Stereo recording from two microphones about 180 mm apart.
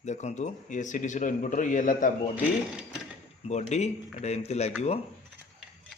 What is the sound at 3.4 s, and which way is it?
Speech, 40° left (ahead or behind).